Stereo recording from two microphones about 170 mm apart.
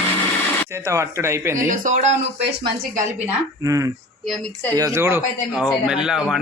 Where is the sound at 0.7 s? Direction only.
15° right (ahead or behind).